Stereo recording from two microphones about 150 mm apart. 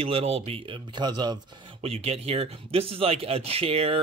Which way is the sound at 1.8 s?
40° right (ahead or behind).